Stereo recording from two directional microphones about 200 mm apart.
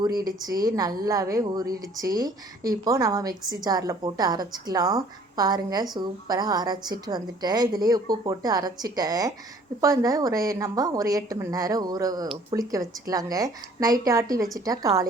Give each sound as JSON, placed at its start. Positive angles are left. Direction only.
{"t": 0.3, "sound": "a woman's voice", "side_deg": -20}